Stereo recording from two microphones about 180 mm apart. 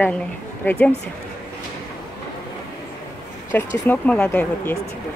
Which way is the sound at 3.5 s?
10° left (ahead or behind).